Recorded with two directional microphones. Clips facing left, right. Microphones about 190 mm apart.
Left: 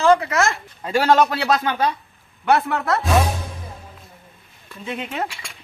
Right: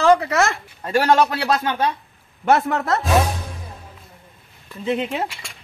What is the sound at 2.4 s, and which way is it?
Speech, 45° right (ahead or behind).